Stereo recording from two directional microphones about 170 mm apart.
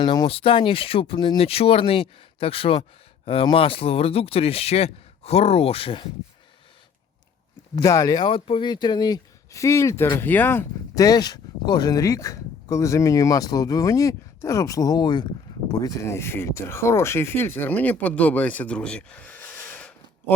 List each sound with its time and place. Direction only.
0.0 s speech: 25° left (ahead or behind)
7.8 s speech: 20° left (ahead or behind)